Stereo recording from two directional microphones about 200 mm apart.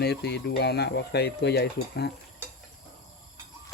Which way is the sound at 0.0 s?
55° left (ahead or behind).